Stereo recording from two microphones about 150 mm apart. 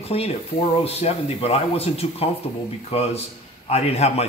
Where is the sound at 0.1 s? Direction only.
45° left (ahead or behind).